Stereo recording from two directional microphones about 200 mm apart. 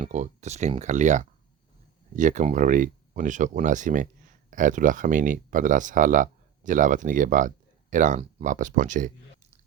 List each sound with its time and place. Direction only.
0.0 s speech: 35° right (ahead or behind)